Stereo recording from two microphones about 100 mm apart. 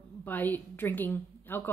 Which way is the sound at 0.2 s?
15° left (ahead or behind).